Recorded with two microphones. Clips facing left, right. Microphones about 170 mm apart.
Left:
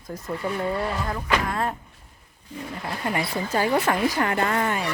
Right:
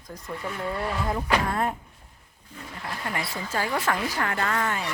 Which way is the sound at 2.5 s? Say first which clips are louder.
Left 8 dB; 90° left.